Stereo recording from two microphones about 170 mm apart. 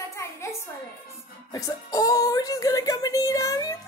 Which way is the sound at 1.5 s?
20° left (ahead or behind).